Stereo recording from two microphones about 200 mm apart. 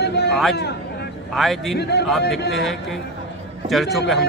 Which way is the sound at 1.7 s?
55° left (ahead or behind).